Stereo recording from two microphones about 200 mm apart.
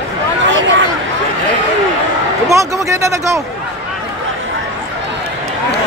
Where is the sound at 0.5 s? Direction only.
70° right (ahead or behind).